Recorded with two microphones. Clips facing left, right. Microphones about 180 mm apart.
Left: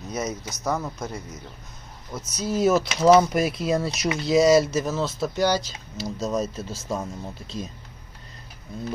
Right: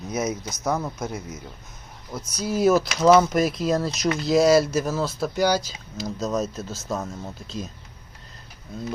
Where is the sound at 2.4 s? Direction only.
5° right (ahead or behind).